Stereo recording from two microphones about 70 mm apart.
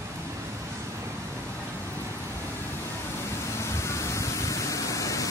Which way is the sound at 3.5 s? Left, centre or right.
Left.